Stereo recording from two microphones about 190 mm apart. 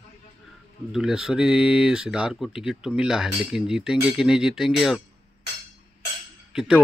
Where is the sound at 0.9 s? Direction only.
Centre (ahead or behind).